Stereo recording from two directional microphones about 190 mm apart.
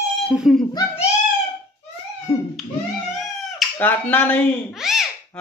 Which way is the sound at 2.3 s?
15° left (ahead or behind).